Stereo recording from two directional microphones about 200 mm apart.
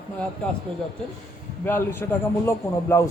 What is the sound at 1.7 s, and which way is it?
A man's voice, 10° left (ahead or behind).